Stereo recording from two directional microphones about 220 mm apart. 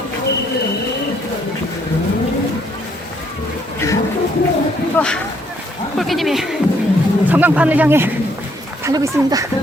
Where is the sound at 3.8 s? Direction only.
10° left (ahead or behind).